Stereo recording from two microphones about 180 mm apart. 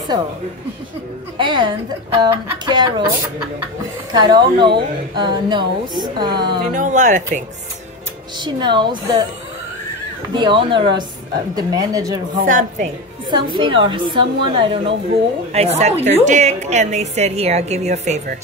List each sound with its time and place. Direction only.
1.4 s a woman's voice: 25° right (ahead or behind)
4.1 s a woman's voice: 25° right (ahead or behind)
6.7 s speech: 45° right (ahead or behind)
8.5 s a woman's voice: 25° right (ahead or behind)
10.3 s a woman's voice: 25° right (ahead or behind)
12.4 s speech: 45° right (ahead or behind)
13.3 s a woman's voice: 25° right (ahead or behind)